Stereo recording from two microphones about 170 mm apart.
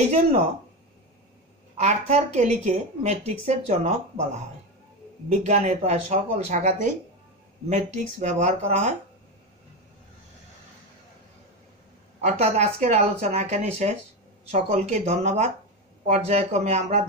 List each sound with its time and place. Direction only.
0.0 s speech: 40° right (ahead or behind)
1.8 s a woman's voice: 40° right (ahead or behind)
5.3 s a woman's voice: 45° right (ahead or behind)
12.2 s speech: 40° right (ahead or behind)